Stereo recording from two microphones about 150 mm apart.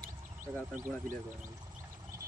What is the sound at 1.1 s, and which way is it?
Speech, 55° right (ahead or behind).